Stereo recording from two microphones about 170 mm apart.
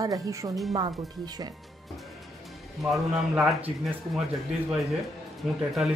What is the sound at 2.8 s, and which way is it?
Speech, centre (ahead or behind).